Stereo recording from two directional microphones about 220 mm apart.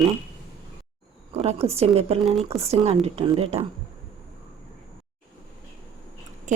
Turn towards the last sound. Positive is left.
turn(degrees=-35)  # may be behind; listen again after turning